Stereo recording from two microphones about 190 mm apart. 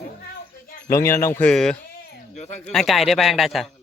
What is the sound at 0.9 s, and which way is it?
Speech, 15° left (ahead or behind).